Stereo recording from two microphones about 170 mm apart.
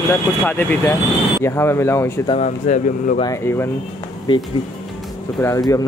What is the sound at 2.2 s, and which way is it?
Speech, 40° left (ahead or behind).